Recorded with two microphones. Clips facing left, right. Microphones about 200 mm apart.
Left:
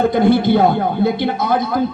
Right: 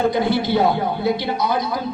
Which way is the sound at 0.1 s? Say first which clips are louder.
Left 6 dB; 55° left (ahead or behind).